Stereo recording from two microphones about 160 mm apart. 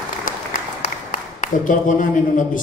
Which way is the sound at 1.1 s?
55° left (ahead or behind).